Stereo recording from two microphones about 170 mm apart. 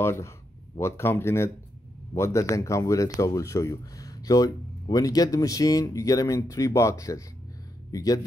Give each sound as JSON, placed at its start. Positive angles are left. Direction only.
{"t": 0.0, "sound": "speech", "side_deg": 15}